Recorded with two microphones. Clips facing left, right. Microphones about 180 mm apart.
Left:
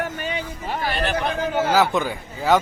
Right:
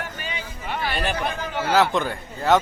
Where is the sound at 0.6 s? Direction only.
40° left (ahead or behind).